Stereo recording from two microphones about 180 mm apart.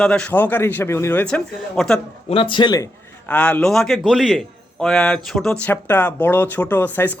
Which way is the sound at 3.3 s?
10° left (ahead or behind).